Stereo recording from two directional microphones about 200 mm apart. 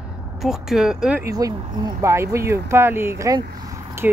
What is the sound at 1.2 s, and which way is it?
Speech, 20° right (ahead or behind).